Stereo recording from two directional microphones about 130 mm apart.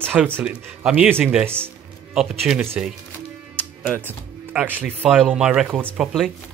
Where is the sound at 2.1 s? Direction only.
5° right (ahead or behind).